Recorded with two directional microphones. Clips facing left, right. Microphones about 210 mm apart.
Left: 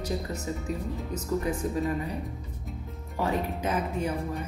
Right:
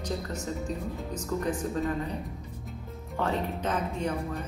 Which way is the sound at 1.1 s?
10° left (ahead or behind).